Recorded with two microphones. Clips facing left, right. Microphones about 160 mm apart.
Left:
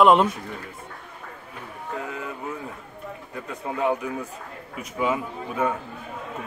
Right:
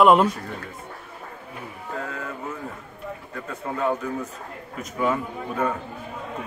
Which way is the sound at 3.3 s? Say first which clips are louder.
Left 1 dB; 15° left (ahead or behind).